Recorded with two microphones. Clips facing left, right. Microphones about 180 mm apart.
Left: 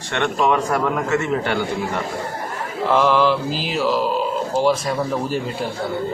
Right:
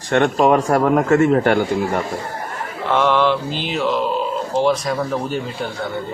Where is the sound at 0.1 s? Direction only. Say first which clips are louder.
Right 5 dB; 45° right (ahead or behind).